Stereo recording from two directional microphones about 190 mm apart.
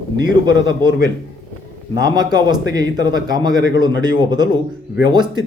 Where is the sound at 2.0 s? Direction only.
20° right (ahead or behind).